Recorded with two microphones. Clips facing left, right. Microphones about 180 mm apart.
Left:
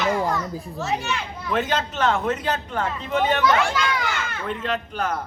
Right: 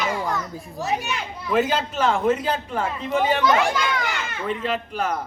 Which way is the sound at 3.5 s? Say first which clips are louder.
Right 1 dB; 15° right (ahead or behind).